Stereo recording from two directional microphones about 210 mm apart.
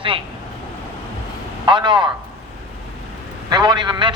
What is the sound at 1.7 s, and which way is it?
Speech, 20° right (ahead or behind).